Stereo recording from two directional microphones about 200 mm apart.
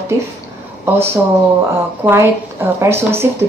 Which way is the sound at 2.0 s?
10° right (ahead or behind).